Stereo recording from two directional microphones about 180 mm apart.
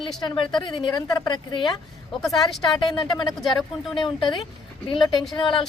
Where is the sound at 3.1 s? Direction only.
25° left (ahead or behind).